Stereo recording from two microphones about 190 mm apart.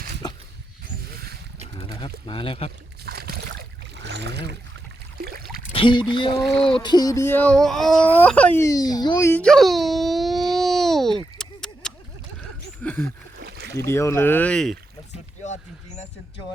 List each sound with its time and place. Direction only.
1.6 s speech: 25° left (ahead or behind)
3.1 s a sound: 55° right (ahead or behind)
5.7 s speech: 25° left (ahead or behind); by 11.2 s centre (ahead or behind)
11.3 s a sound: 5° left (ahead or behind)
13.4 s rowboat: 60° right (ahead or behind)
13.8 s speech: 15° left (ahead or behind)